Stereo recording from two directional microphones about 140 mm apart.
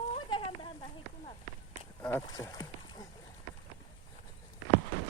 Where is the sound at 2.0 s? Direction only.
20° left (ahead or behind).